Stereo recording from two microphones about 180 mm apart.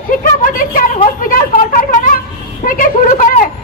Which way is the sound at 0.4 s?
50° left (ahead or behind).